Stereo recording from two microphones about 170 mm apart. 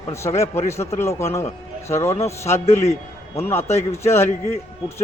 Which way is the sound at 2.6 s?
40° left (ahead or behind).